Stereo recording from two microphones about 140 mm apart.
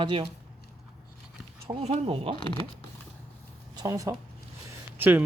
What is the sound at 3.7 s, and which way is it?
Speech, 25° right (ahead or behind).